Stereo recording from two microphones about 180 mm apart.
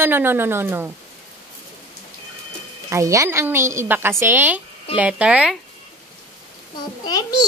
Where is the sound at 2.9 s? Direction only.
15° right (ahead or behind).